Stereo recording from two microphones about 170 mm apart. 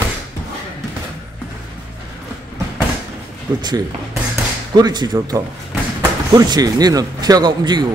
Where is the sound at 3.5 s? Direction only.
25° right (ahead or behind).